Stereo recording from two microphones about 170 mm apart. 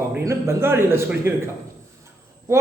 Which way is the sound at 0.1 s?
15° right (ahead or behind).